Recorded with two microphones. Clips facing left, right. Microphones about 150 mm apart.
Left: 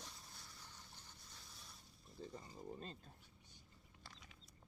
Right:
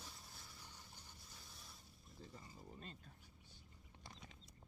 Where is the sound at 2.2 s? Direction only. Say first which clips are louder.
Left 6 dB; 35° left (ahead or behind).